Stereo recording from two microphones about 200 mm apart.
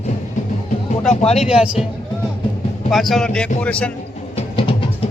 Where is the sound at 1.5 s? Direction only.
5° right (ahead or behind).